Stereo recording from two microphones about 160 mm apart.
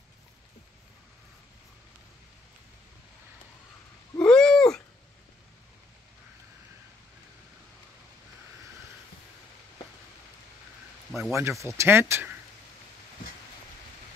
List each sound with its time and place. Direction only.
4.2 s a sound: 5° left (ahead or behind)
11.1 s speech: centre (ahead or behind)
11.3 s speech: 20° right (ahead or behind)